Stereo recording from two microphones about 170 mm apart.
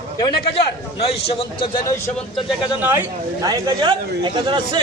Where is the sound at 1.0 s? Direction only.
35° left (ahead or behind).